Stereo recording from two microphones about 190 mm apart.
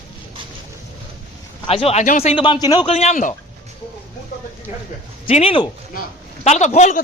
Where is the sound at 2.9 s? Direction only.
35° left (ahead or behind).